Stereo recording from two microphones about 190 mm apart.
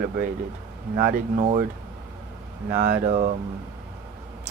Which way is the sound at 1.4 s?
40° right (ahead or behind).